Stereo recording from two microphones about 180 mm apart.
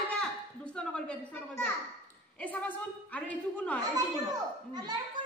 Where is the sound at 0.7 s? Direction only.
5° left (ahead or behind).